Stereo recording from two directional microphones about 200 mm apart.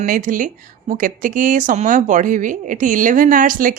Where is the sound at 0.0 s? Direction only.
45° right (ahead or behind).